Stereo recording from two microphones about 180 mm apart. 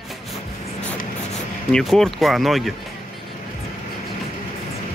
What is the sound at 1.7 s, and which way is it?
Speech, centre (ahead or behind).